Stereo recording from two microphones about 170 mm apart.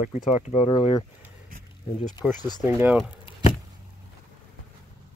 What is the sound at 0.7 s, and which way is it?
Speech, 25° left (ahead or behind).